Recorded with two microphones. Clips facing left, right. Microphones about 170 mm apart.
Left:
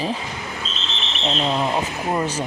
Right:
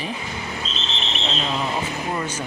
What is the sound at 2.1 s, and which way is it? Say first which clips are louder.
Speech: left 8 dB; 30° left (ahead or behind).